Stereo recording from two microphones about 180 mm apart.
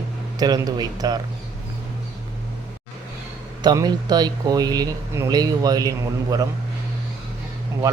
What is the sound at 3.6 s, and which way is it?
Speech, 20° right (ahead or behind).